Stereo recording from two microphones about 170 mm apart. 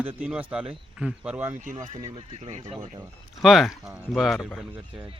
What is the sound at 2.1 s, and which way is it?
Speech, 35° right (ahead or behind).